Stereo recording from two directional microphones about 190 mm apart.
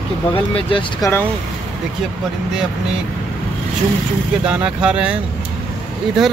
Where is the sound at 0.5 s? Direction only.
25° left (ahead or behind).